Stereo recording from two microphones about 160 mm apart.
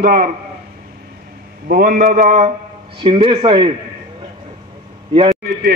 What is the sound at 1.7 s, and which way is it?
Speech, 65° right (ahead or behind).